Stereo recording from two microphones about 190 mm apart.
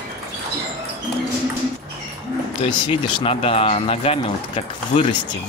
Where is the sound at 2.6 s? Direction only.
25° left (ahead or behind).